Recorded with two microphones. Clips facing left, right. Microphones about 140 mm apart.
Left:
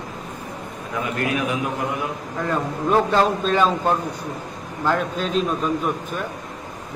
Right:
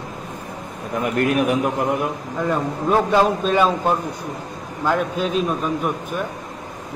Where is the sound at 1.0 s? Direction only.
65° right (ahead or behind).